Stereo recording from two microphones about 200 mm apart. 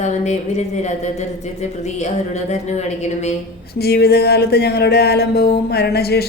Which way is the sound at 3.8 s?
50° left (ahead or behind).